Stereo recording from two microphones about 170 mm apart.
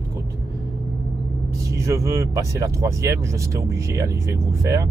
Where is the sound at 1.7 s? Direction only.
15° right (ahead or behind).